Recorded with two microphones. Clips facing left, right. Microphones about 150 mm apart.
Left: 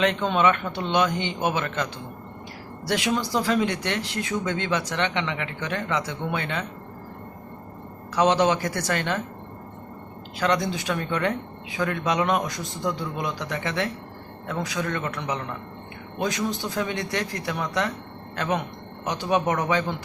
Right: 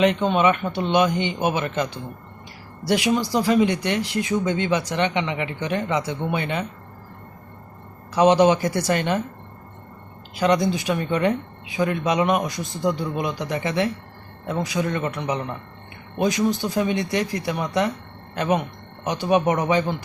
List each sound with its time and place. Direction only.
0.0 s speech: 10° right (ahead or behind)
8.1 s speech: 15° right (ahead or behind)
10.4 s speech: 15° right (ahead or behind)